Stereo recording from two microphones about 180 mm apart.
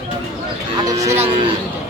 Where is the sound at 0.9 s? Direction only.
15° right (ahead or behind).